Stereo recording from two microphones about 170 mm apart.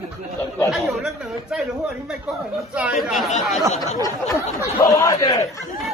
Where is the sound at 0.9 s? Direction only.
5° right (ahead or behind).